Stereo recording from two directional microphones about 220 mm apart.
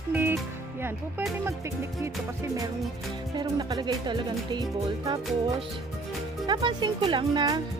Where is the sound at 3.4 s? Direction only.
20° right (ahead or behind).